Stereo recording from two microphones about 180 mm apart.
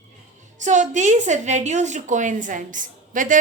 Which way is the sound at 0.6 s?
40° right (ahead or behind).